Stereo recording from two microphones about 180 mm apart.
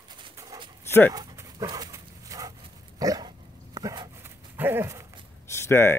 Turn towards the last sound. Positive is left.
turn(degrees=15)  # may be behind; listen again after turning